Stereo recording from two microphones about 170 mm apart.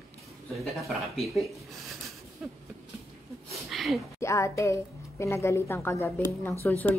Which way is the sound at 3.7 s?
Centre (ahead or behind).